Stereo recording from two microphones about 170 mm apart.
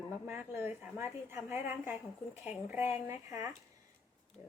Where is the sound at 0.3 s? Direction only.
15° right (ahead or behind).